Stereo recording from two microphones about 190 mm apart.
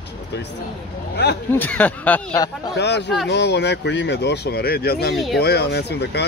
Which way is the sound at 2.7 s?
65° left (ahead or behind).